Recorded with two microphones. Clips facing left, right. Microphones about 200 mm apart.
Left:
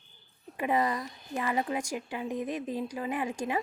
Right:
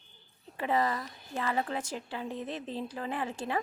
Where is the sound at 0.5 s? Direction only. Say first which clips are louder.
Left 1 dB; 15° left (ahead or behind).